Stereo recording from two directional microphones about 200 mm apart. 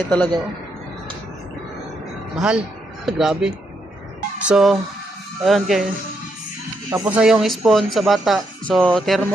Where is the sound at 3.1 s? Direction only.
Centre (ahead or behind).